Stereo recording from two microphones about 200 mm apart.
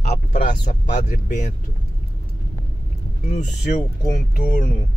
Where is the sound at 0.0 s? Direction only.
35° left (ahead or behind).